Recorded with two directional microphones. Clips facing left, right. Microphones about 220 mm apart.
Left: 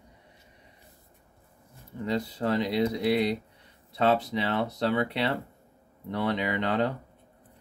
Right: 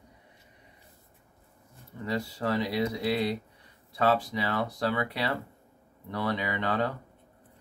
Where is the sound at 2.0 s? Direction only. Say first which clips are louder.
Left 2 dB; 20° left (ahead or behind).